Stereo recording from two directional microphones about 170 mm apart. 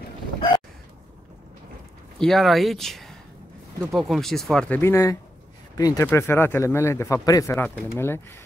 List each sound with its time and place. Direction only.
2.1 s speech: centre (ahead or behind)